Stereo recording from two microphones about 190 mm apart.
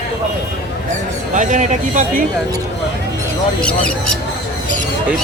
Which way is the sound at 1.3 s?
40° right (ahead or behind).